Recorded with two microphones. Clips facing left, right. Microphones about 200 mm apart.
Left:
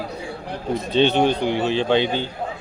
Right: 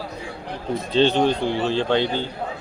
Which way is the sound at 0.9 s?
60° left (ahead or behind).